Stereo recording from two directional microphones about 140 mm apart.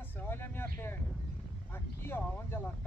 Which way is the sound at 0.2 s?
15° left (ahead or behind).